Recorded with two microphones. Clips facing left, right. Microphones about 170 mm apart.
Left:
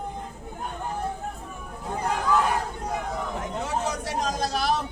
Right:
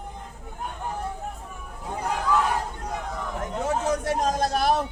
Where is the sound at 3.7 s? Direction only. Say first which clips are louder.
Right 7 dB; 50° right (ahead or behind).